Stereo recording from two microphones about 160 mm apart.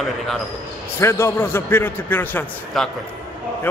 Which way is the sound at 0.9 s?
15° left (ahead or behind).